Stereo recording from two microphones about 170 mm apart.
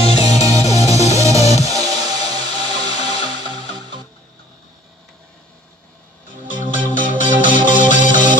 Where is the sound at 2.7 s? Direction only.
35° left (ahead or behind).